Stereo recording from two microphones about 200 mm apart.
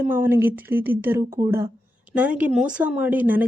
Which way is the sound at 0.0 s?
10° right (ahead or behind).